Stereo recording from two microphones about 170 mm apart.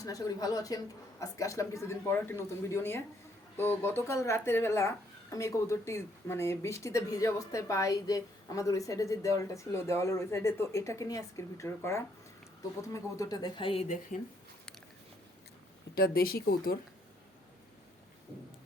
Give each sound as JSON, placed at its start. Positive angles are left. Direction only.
{"t": 0.0, "sound": "speech", "side_deg": 20}
{"t": 13.8, "sound": "speech", "side_deg": 45}
{"t": 16.0, "sound": "speech", "side_deg": 60}